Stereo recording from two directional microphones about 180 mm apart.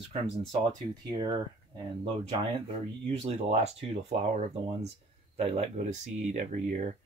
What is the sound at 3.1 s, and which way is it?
Speech, 35° right (ahead or behind).